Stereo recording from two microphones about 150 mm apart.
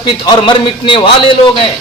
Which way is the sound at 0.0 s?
30° left (ahead or behind).